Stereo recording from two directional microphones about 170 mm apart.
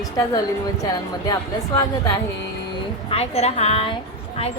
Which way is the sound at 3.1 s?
35° left (ahead or behind).